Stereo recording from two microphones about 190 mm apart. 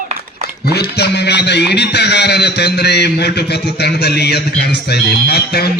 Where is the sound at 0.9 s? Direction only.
60° left (ahead or behind).